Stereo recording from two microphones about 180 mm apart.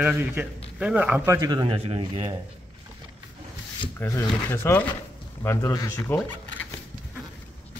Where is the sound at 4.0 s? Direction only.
15° left (ahead or behind).